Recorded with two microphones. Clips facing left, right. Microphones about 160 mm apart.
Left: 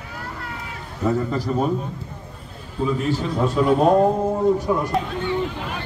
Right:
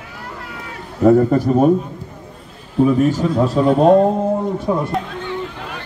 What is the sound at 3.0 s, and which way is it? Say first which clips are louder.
A man's voice: right 7 dB; 45° right (ahead or behind).